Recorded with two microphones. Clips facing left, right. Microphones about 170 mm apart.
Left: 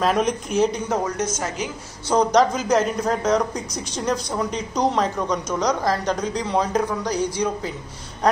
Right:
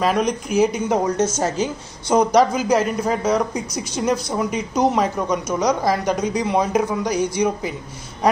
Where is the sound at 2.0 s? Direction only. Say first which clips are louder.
Right 2 dB; 10° right (ahead or behind).